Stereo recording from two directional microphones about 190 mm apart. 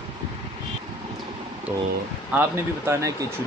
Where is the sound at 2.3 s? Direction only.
15° right (ahead or behind).